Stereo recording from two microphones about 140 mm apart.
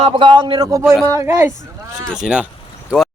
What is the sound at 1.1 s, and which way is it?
Speech, 20° right (ahead or behind).